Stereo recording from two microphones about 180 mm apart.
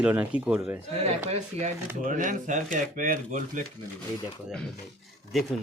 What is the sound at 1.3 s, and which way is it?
Speech, 40° right (ahead or behind).